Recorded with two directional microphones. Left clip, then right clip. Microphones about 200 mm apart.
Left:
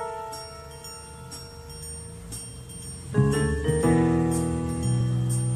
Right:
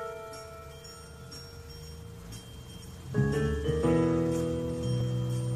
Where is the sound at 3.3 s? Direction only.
35° left (ahead or behind).